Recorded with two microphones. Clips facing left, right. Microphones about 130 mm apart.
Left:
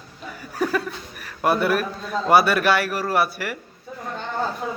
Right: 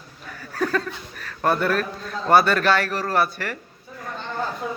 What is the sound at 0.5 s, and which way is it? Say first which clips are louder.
A man's voice: even; 10° left (ahead or behind).